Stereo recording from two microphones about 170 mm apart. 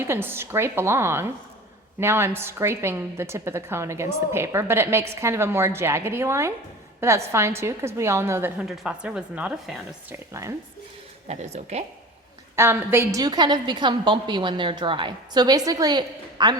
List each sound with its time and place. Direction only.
0.0 s a woman's voice: 15° right (ahead or behind)
11.3 s speech: 40° right (ahead or behind)
12.5 s a woman's voice: 15° right (ahead or behind)